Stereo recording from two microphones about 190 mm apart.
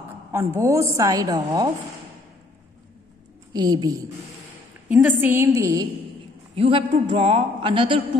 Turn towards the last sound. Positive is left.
turn(degrees=-25)  # may be behind; listen again after turning